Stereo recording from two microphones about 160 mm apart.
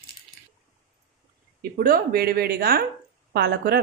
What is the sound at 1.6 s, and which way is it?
A woman's voice, 65° right (ahead or behind).